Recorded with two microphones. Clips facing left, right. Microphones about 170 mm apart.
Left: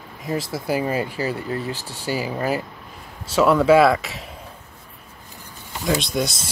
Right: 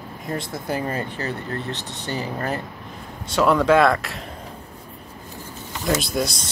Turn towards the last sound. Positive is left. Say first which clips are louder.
# even
turn(degrees=0)  # may be behind; listen again after turning